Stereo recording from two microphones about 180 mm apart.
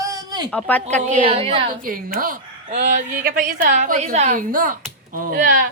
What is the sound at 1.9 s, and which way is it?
Speech, 50° right (ahead or behind).